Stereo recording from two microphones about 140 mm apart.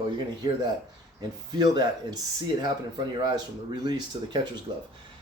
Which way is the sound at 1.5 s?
30° right (ahead or behind).